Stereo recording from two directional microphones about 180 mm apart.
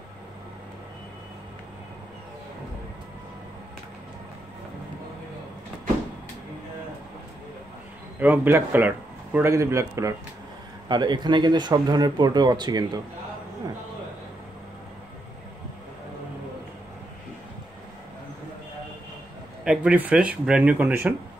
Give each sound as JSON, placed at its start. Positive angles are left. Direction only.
{"t": 8.2, "sound": "speech", "side_deg": -10}
{"t": 19.6, "sound": "speech", "side_deg": -5}